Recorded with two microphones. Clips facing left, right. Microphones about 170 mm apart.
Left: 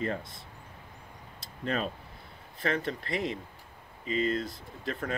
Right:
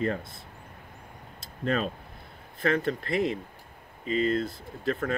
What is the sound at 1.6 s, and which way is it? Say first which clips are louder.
Speech: right 4 dB; 45° right (ahead or behind).